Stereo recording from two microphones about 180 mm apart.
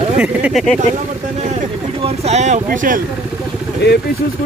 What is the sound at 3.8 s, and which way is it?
Speech, 65° left (ahead or behind).